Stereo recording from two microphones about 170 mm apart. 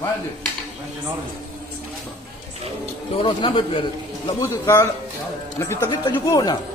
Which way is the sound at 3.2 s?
30° left (ahead or behind).